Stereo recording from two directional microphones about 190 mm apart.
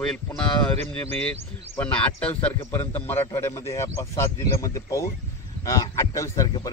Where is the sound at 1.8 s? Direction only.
5° left (ahead or behind).